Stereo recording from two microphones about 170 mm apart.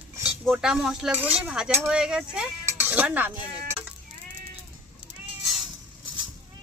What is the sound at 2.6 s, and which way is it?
Music, 10° right (ahead or behind).